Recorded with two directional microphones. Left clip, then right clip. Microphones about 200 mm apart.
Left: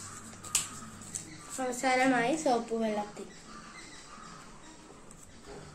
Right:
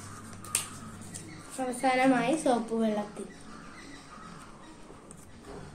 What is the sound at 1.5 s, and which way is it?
Speech, 20° left (ahead or behind).